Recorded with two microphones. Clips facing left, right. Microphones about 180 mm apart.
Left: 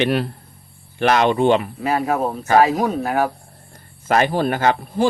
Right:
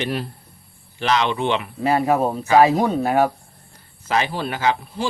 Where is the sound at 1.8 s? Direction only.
30° right (ahead or behind).